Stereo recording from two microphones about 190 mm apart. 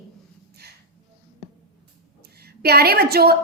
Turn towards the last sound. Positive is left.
turn(degrees=-55)  # may be behind; listen again after turning